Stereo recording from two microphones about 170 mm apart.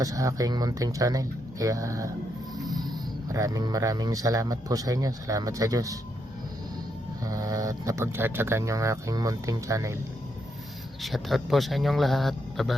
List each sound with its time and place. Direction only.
0.0 s speech: 20° right (ahead or behind)
7.3 s speech: 20° right (ahead or behind)
11.0 s speech: centre (ahead or behind)